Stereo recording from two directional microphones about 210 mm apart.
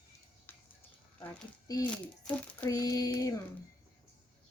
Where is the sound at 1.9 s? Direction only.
5° left (ahead or behind).